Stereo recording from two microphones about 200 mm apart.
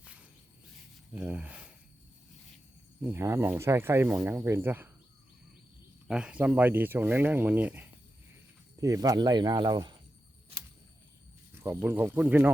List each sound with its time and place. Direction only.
1.1 s speech: 5° right (ahead or behind)
3.0 s speech: 10° right (ahead or behind)
6.1 s speech: 5° right (ahead or behind); by 9.9 s 20° right (ahead or behind)
11.5 s speech: 10° right (ahead or behind)